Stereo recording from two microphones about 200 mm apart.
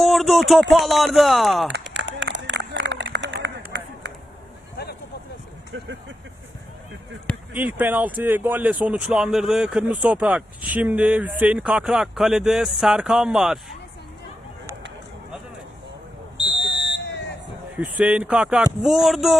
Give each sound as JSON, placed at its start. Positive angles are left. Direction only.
{"t": 0.0, "sound": "a sound", "side_deg": 0}
{"t": 0.7, "sound": "speech", "side_deg": 0}
{"t": 1.7, "sound": "a sound", "side_deg": -65}
{"t": 5.7, "sound": "speech", "side_deg": -65}
{"t": 7.5, "sound": "speech", "side_deg": -10}
{"t": 16.7, "sound": "smoke detector", "side_deg": 60}
{"t": 17.7, "sound": "speech", "side_deg": -5}